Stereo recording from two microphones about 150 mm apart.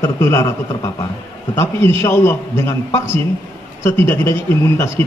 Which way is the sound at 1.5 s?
15° left (ahead or behind).